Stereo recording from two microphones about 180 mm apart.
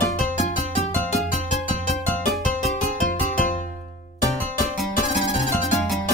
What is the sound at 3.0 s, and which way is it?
Music, 45° left (ahead or behind).